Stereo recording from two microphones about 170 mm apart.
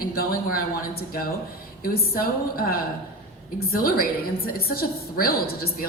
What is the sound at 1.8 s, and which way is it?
Speech, 60° left (ahead or behind).